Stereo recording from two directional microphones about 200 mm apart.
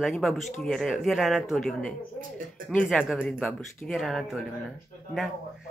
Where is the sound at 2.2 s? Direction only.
45° right (ahead or behind).